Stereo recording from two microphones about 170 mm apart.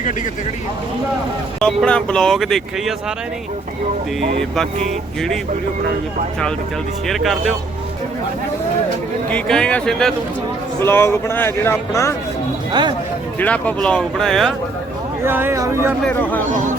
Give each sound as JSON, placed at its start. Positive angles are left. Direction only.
{"t": 1.6, "sound": "speech", "side_deg": 5}
{"t": 7.1, "sound": "speech", "side_deg": 0}
{"t": 9.3, "sound": "speech", "side_deg": 5}
{"t": 13.4, "sound": "speech", "side_deg": 10}
{"t": 15.2, "sound": "speech", "side_deg": -15}
{"t": 16.0, "sound": "speech", "side_deg": 10}
{"t": 16.5, "sound": "speech", "side_deg": -50}